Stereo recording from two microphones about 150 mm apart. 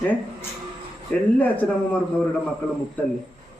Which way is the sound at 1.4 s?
10° left (ahead or behind).